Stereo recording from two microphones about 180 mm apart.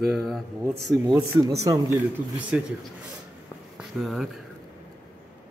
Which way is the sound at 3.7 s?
Centre (ahead or behind).